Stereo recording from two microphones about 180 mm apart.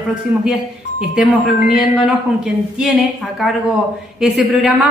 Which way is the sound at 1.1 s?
5° right (ahead or behind).